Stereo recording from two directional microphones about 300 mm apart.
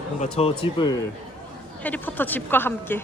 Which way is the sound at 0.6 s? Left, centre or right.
Centre.